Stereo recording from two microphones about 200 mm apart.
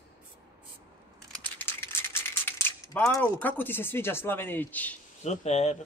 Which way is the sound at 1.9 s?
10° left (ahead or behind).